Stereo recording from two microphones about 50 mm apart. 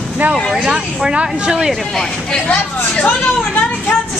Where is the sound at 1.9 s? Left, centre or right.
Centre.